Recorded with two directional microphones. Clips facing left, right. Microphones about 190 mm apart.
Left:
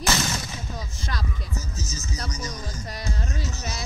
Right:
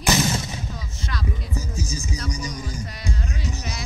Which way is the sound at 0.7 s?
35° left (ahead or behind).